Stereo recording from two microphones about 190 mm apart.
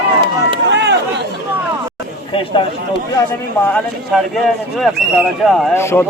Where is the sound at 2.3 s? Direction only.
25° left (ahead or behind).